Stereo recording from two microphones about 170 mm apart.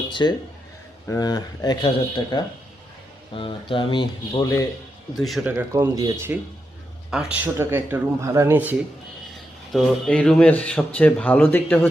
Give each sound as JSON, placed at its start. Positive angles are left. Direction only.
{"t": 0.1, "sound": "speech", "side_deg": 25}
{"t": 4.4, "sound": "speech", "side_deg": 20}
{"t": 5.1, "sound": "speech", "side_deg": 0}
{"t": 7.1, "sound": "speech", "side_deg": -5}
{"t": 9.7, "sound": "speech", "side_deg": 5}